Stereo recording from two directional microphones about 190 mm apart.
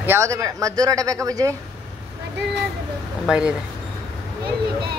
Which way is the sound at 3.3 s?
5° right (ahead or behind).